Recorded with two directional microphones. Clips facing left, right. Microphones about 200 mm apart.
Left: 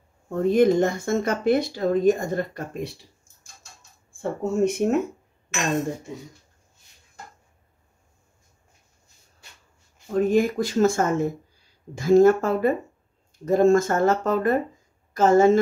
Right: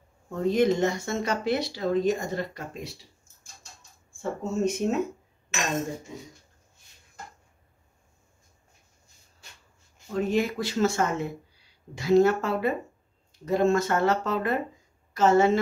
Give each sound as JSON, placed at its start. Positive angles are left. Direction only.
{"t": 0.3, "sound": "speech", "side_deg": 50}
{"t": 4.2, "sound": "speech", "side_deg": 60}
{"t": 10.1, "sound": "speech", "side_deg": 45}